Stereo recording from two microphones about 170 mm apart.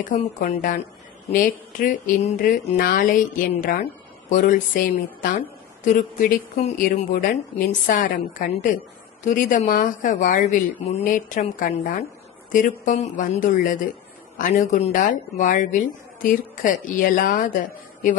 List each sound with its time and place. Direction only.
0.1 s speech: 50° left (ahead or behind)